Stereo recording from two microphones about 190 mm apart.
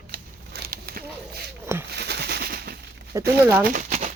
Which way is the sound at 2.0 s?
60° right (ahead or behind).